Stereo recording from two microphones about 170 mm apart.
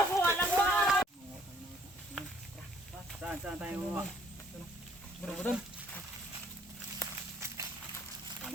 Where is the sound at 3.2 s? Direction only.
5° right (ahead or behind).